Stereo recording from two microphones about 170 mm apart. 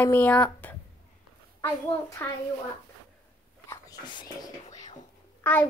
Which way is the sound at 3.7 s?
25° left (ahead or behind).